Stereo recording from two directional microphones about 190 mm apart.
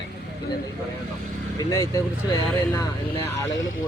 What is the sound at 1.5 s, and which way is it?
Speech, 20° left (ahead or behind).